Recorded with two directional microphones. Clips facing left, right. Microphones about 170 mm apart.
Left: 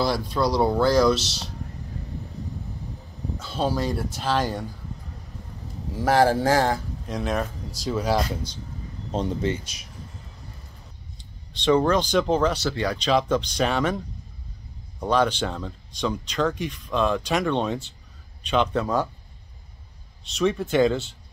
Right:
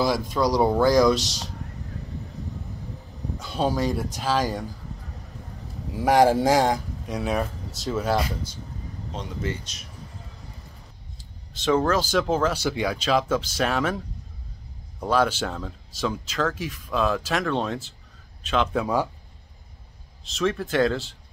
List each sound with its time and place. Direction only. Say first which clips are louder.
0.6 s speech: right 1 dB; 15° right (ahead or behind)
3.5 s speech: right 1 dB; centre (ahead or behind)
5.9 s speech: right 1 dB; 15° right (ahead or behind)
9.1 s speech: left 7 dB; 35° left (ahead or behind)
11.1 s speech: left 1 dB; 5° right (ahead or behind)
20.2 s speech: left 2 dB; centre (ahead or behind)